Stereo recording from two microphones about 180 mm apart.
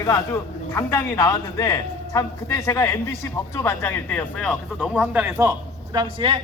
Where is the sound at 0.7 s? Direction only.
15° left (ahead or behind).